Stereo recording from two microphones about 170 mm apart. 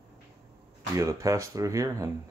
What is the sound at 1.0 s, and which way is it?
Speech, 20° right (ahead or behind).